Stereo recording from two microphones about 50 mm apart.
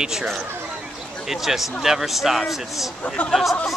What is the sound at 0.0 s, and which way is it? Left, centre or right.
Speech, centre.